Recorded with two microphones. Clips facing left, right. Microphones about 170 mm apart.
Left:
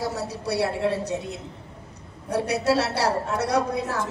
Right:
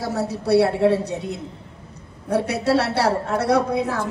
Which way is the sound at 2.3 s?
55° right (ahead or behind).